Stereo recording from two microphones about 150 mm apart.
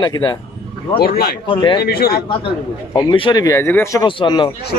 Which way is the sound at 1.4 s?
30° left (ahead or behind).